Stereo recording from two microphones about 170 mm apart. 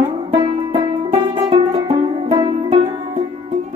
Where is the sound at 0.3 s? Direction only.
25° right (ahead or behind).